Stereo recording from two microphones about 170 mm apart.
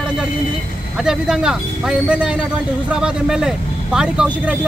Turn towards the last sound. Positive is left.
turn(degrees=-5)  # may be behind; listen again after turning